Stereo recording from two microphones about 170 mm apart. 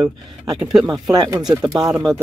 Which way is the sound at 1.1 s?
25° right (ahead or behind).